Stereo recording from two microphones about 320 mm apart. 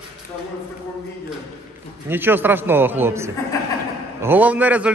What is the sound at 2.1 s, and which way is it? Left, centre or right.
A man's voice, centre.